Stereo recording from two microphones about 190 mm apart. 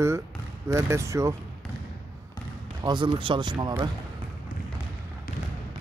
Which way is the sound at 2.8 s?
25° right (ahead or behind).